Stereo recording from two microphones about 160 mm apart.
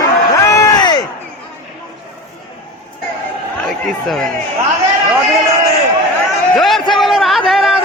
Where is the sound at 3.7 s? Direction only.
Centre (ahead or behind).